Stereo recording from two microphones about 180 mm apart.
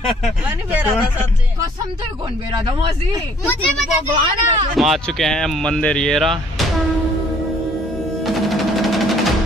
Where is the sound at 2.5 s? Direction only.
25° right (ahead or behind).